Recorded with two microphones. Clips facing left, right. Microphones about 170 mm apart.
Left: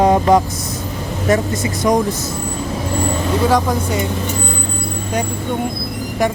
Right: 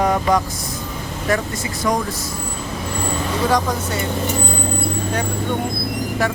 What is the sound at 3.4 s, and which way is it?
Speech, 10° left (ahead or behind).